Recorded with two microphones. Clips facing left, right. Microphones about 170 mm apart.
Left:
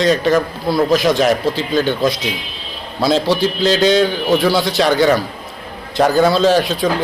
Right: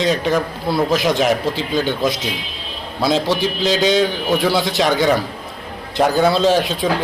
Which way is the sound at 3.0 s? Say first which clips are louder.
Left 3 dB; 15° right (ahead or behind).